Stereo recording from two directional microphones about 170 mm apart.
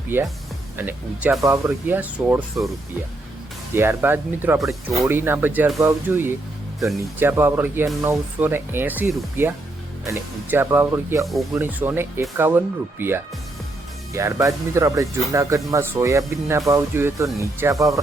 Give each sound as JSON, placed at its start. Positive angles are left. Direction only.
{"t": 0.1, "sound": "speech", "side_deg": -10}
{"t": 3.8, "sound": "speech", "side_deg": -15}
{"t": 4.6, "sound": "speech", "side_deg": 0}
{"t": 4.9, "sound": "speech", "side_deg": -15}